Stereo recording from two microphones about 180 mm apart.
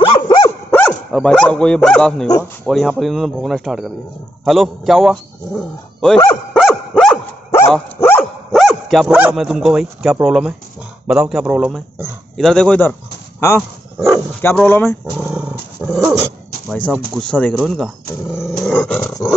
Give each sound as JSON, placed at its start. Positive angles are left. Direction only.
{"t": 0.0, "sound": "dog", "side_deg": 30}
{"t": 0.7, "sound": "dog", "side_deg": 10}
{"t": 1.1, "sound": "a man's voice", "side_deg": 5}
{"t": 7.7, "sound": "dog", "side_deg": 10}
{"t": 9.0, "sound": "speech", "side_deg": -10}
{"t": 12.4, "sound": "speech", "side_deg": 5}
{"t": 14.4, "sound": "speech", "side_deg": 10}
{"t": 15.1, "sound": "dog", "side_deg": -10}
{"t": 16.9, "sound": "speech", "side_deg": 5}
{"t": 18.4, "sound": "roar", "side_deg": 5}